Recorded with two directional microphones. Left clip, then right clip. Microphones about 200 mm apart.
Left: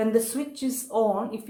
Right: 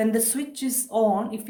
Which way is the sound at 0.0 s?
50° right (ahead or behind).